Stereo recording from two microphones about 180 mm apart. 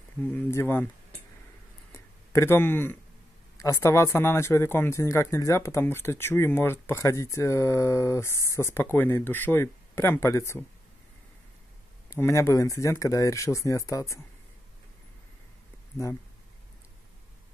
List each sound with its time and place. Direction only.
0.3 s speech: 15° left (ahead or behind)
1.9 s a sound: 15° left (ahead or behind)
3.5 s speech: 20° left (ahead or behind)
12.1 s speech: 15° left (ahead or behind)